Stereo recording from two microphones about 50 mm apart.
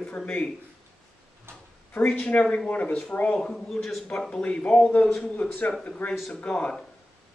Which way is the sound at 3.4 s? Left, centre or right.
Centre.